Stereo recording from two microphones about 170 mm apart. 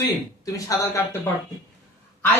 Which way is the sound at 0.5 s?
20° left (ahead or behind).